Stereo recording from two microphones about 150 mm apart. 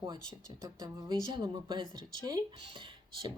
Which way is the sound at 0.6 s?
25° right (ahead or behind).